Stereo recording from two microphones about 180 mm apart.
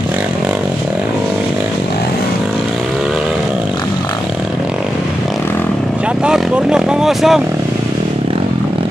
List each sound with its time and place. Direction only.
6.2 s vehicle: 5° right (ahead or behind)